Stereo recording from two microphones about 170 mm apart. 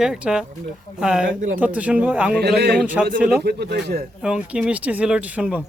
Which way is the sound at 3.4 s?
75° right (ahead or behind).